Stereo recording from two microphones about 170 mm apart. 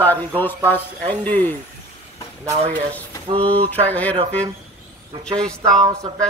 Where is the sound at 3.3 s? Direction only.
35° right (ahead or behind).